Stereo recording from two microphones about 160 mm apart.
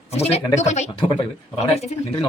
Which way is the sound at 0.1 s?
40° left (ahead or behind).